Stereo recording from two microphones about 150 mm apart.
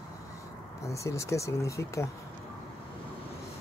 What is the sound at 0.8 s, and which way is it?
Speech, 20° left (ahead or behind).